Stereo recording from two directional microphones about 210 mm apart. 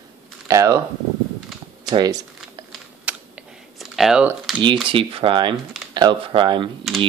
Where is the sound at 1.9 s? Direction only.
20° right (ahead or behind).